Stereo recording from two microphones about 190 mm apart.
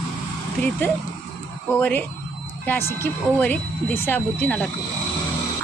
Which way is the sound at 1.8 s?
10° left (ahead or behind).